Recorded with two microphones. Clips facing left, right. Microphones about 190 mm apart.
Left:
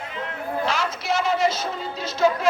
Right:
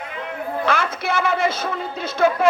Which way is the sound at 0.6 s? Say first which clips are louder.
Right 4 dB; 55° right (ahead or behind).